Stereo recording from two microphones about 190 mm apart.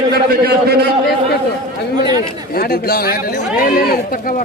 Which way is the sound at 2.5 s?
55° left (ahead or behind).